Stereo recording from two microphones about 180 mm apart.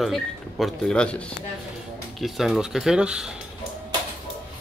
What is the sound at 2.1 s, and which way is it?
A man's voice, centre (ahead or behind).